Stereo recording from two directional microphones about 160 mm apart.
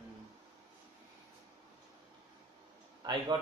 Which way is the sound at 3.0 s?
30° right (ahead or behind).